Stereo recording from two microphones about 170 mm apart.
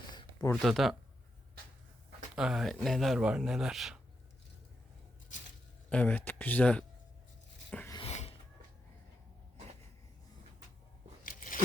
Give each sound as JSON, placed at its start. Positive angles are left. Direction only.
{"t": 0.1, "sound": "a sound", "side_deg": 25}
{"t": 0.5, "sound": "speech", "side_deg": 0}
{"t": 2.3, "sound": "speech", "side_deg": -5}
{"t": 5.9, "sound": "speech", "side_deg": 5}
{"t": 8.0, "sound": "a sound", "side_deg": 40}
{"t": 11.2, "sound": "squish", "side_deg": 55}